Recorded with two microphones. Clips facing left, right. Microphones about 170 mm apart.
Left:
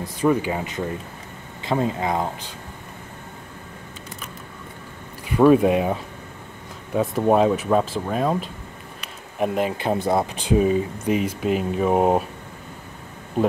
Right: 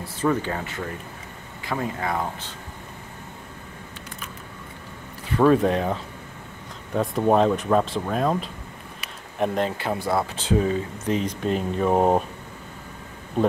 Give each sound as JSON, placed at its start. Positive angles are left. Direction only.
{"t": 0.0, "sound": "speech", "side_deg": 15}
{"t": 5.3, "sound": "speech", "side_deg": 10}
{"t": 9.0, "sound": "a sound", "side_deg": 5}
{"t": 9.8, "sound": "speech", "side_deg": 20}